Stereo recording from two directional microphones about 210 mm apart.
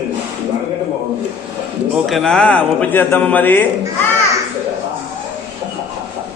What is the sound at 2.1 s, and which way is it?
Speech, centre (ahead or behind).